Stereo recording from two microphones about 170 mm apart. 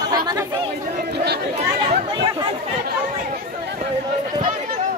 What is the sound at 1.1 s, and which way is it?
Chatter, 75° right (ahead or behind).